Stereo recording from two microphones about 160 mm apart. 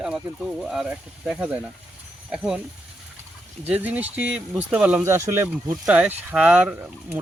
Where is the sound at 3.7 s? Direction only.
10° right (ahead or behind).